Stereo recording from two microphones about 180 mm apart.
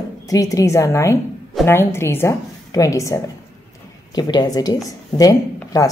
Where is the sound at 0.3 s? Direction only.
20° left (ahead or behind).